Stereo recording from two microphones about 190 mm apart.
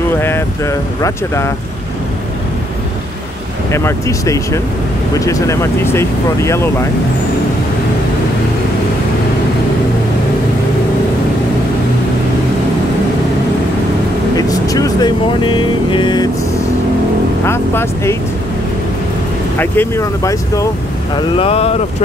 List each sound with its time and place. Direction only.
0.2 s speech: 15° left (ahead or behind)
3.7 s speech: 15° left (ahead or behind)
14.3 s vehicle: 20° left (ahead or behind)
17.5 s speech: 15° left (ahead or behind)
19.6 s speech: 10° left (ahead or behind)
21.4 s speech: 30° left (ahead or behind)